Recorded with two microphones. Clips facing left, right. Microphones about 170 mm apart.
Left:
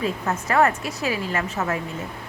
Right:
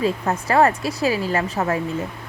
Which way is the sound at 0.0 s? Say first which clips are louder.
Right 4 dB; 30° right (ahead or behind).